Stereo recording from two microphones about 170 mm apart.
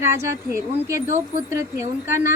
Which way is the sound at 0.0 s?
15° right (ahead or behind).